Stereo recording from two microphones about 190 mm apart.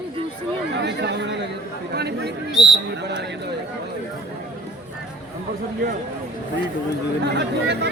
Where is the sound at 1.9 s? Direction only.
60° right (ahead or behind).